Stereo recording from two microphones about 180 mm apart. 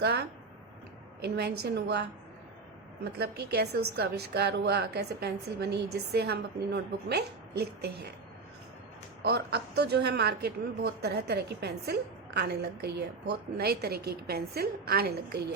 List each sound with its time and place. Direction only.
0.0 s a woman's voice: 65° right (ahead or behind)
9.2 s a woman's voice: 65° right (ahead or behind)